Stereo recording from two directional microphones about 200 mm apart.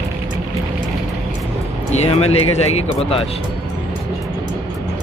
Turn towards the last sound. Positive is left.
turn(degrees=30)  # may be behind; listen again after turning